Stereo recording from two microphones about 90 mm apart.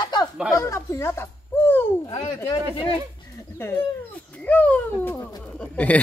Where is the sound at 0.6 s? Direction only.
35° left (ahead or behind).